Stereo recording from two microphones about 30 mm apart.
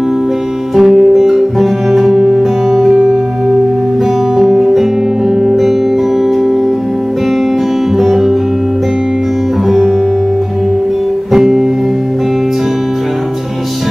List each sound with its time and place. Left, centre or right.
0.7 s music: centre
4.4 s music: centre
8.0 s music: centre
11.3 s music: centre